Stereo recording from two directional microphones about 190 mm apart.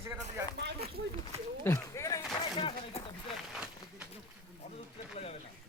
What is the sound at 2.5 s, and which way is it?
Speech, 30° left (ahead or behind).